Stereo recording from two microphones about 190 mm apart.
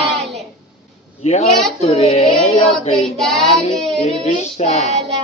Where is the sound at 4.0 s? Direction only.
40° left (ahead or behind).